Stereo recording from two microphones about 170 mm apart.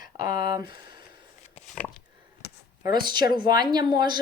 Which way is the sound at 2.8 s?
25° right (ahead or behind).